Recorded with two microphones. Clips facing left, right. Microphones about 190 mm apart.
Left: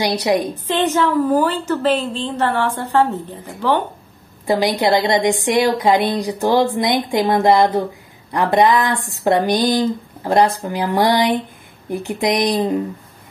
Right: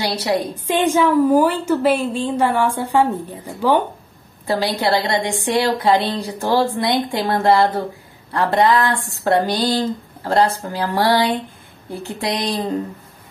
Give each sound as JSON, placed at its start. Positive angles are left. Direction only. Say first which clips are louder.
{"t": 0.0, "sound": "a woman's voice", "louder": "left 3 dB", "side_deg": 15}
{"t": 0.7, "sound": "a woman's voice", "louder": "right 2 dB", "side_deg": -10}
{"t": 4.5, "sound": "a woman's voice", "louder": "left 3 dB", "side_deg": 15}